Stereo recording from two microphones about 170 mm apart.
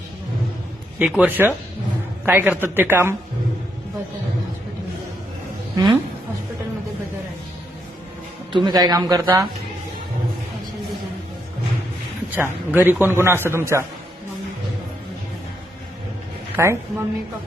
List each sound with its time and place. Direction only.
0.9 s speech: 5° right (ahead or behind)
5.7 s a woman's voice: 25° right (ahead or behind)
8.5 s speech: 25° right (ahead or behind)
12.4 s speech: 10° right (ahead or behind)
16.6 s speech: 15° right (ahead or behind)